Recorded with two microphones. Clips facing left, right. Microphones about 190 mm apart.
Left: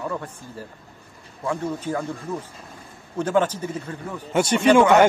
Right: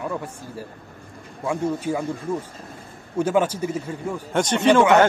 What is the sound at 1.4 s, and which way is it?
Speech, 10° right (ahead or behind).